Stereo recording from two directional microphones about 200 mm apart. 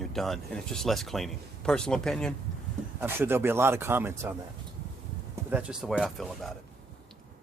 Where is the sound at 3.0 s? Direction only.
10° right (ahead or behind).